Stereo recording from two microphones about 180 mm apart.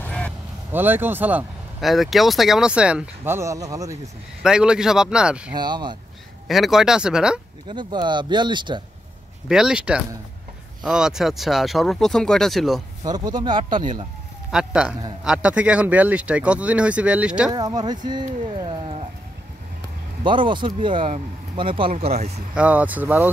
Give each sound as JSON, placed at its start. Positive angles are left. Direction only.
{"t": 0.0, "sound": "a sound", "side_deg": 5}
{"t": 0.7, "sound": "speech", "side_deg": -10}
{"t": 4.4, "sound": "speech", "side_deg": -5}
{"t": 5.5, "sound": "speech", "side_deg": -25}
{"t": 6.4, "sound": "speech", "side_deg": 0}
{"t": 7.6, "sound": "speech", "side_deg": -25}
{"t": 9.5, "sound": "speech", "side_deg": -5}
{"t": 13.0, "sound": "speech", "side_deg": -20}
{"t": 14.5, "sound": "speech", "side_deg": -5}
{"t": 17.5, "sound": "speech", "side_deg": -20}
{"t": 20.2, "sound": "speech", "side_deg": -25}
{"t": 22.5, "sound": "speech", "side_deg": -5}